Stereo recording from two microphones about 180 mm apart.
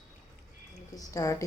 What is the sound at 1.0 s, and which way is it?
Speech, 20° left (ahead or behind).